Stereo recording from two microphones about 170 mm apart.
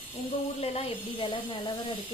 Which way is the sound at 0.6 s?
35° left (ahead or behind).